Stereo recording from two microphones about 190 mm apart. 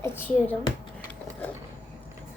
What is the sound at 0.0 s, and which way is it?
Speech, 10° left (ahead or behind).